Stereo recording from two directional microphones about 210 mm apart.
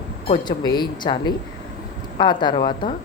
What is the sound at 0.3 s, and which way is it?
Speech, 20° left (ahead or behind).